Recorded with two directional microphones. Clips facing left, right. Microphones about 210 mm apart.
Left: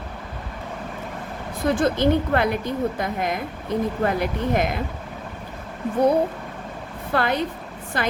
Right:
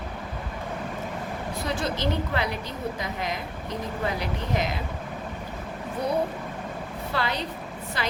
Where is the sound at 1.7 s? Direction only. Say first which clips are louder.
Left 9 dB; 50° left (ahead or behind).